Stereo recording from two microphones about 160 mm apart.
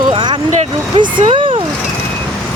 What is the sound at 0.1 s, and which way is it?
Vehicle, 30° right (ahead or behind).